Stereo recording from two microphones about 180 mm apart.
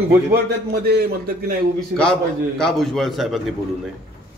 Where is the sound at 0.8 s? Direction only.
60° right (ahead or behind).